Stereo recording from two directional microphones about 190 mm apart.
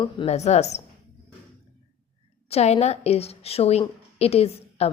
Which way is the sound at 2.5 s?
35° left (ahead or behind).